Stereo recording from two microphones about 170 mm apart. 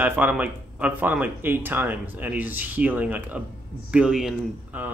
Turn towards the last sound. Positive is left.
turn(degrees=-5)  # may be behind; listen again after turning